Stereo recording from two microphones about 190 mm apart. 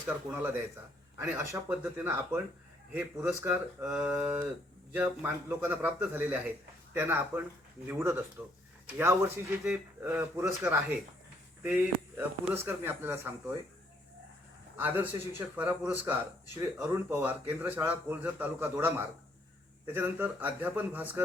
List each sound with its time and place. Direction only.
1.2 s a man's voice: 15° right (ahead or behind)
14.8 s a man's voice: 10° right (ahead or behind)